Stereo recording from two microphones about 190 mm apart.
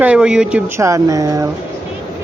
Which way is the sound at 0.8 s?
15° right (ahead or behind).